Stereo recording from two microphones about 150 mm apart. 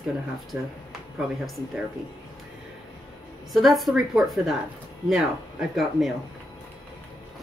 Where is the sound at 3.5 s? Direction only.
Centre (ahead or behind).